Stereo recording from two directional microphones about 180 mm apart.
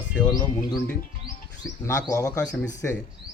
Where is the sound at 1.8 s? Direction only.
15° left (ahead or behind).